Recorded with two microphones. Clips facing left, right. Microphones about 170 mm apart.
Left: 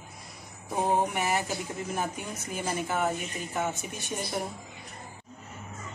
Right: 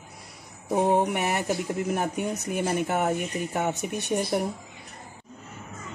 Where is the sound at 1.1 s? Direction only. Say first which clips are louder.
Right 3 dB; 65° right (ahead or behind).